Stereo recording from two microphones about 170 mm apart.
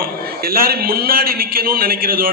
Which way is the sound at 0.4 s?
60° right (ahead or behind).